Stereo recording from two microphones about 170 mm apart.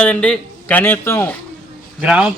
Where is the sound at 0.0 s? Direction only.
5° left (ahead or behind).